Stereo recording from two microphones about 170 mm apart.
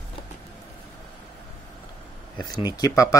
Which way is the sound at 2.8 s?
20° left (ahead or behind).